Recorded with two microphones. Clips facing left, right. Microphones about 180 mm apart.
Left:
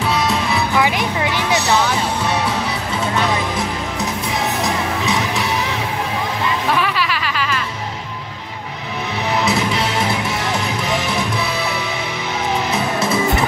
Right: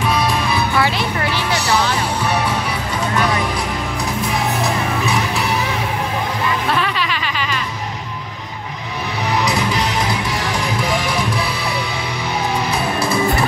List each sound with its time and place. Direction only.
0.3 s music: 15° left (ahead or behind)
6.7 s a sound: 5° left (ahead or behind)
9.4 s music: 25° left (ahead or behind)
12.7 s music: 20° left (ahead or behind)